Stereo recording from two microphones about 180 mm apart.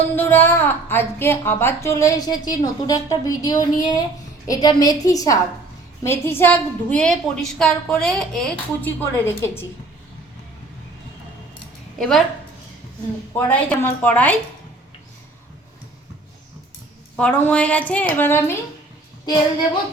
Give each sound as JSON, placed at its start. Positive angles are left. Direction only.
{"t": 0.2, "sound": "a woman's voice", "side_deg": 10}
{"t": 11.9, "sound": "a woman's voice", "side_deg": 0}
{"t": 13.3, "sound": "a woman's voice", "side_deg": 10}
{"t": 17.2, "sound": "a woman's voice", "side_deg": 10}